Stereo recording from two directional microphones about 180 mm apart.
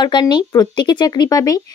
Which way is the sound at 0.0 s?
25° left (ahead or behind).